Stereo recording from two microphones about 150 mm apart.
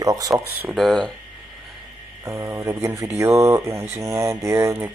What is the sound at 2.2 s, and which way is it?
Speech, 20° right (ahead or behind).